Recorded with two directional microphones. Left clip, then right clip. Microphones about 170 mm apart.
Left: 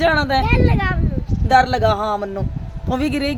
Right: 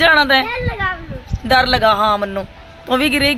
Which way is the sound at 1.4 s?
Centre (ahead or behind).